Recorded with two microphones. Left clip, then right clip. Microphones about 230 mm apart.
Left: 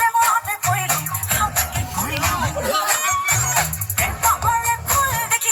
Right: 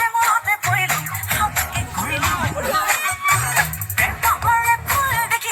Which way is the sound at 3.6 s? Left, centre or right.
Left.